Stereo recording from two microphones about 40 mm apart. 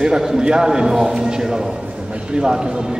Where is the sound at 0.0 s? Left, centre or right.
Centre.